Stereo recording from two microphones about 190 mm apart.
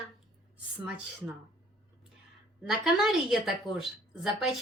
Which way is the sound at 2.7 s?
Centre (ahead or behind).